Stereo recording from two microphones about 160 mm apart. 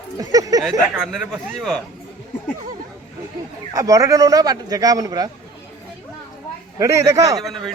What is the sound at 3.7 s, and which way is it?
Speech, 20° right (ahead or behind).